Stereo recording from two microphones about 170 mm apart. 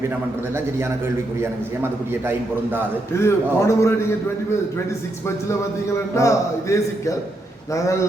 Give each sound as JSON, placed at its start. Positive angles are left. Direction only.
{"t": 3.2, "sound": "a man's voice", "side_deg": 15}
{"t": 6.1, "sound": "a man's voice", "side_deg": 20}